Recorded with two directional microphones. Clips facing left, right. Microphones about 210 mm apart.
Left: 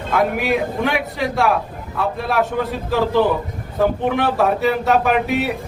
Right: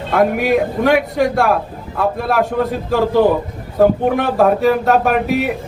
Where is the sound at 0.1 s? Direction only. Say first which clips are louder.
Right 4 dB; 45° right (ahead or behind).